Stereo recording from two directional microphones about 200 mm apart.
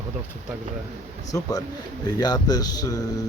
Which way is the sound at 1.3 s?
20° left (ahead or behind).